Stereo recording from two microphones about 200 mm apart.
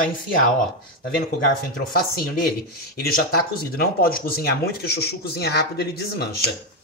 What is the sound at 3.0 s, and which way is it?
Speech, 50° left (ahead or behind).